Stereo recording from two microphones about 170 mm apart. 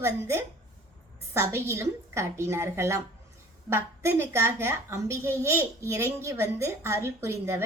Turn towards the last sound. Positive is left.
turn(degrees=-15)  # may be behind; listen again after turning